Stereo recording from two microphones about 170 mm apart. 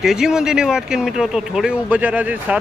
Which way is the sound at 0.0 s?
5° right (ahead or behind).